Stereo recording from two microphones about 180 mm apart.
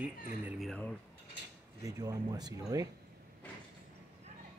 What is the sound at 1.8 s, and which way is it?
Speech, 20° right (ahead or behind).